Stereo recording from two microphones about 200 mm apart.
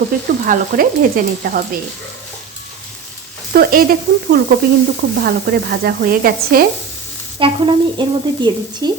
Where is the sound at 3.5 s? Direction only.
50° right (ahead or behind).